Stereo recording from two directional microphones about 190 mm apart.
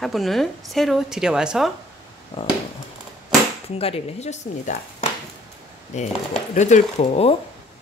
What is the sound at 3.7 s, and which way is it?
Speech, 30° left (ahead or behind).